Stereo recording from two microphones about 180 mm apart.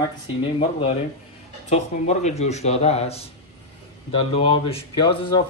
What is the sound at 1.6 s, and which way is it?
Speech, 35° left (ahead or behind).